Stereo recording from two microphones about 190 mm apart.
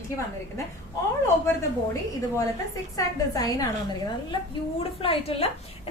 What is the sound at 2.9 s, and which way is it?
Speech, 20° left (ahead or behind).